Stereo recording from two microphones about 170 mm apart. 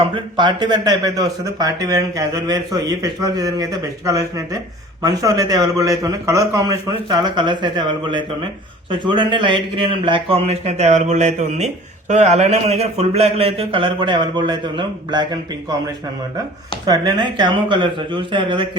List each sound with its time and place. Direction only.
0.0 s a man's voice: 30° right (ahead or behind)
16.8 s speech: 25° right (ahead or behind)